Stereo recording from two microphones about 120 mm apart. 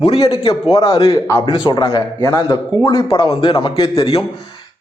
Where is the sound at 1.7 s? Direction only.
35° left (ahead or behind).